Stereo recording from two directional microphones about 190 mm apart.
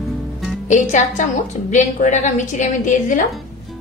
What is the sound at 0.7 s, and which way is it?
A woman's voice, 40° left (ahead or behind).